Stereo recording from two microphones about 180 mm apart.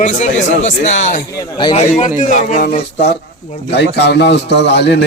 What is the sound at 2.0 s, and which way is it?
Speech, 45° left (ahead or behind).